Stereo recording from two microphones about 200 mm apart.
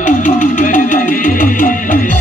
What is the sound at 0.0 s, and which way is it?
Music, 40° left (ahead or behind).